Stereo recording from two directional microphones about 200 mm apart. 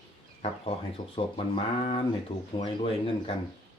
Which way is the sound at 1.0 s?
20° left (ahead or behind).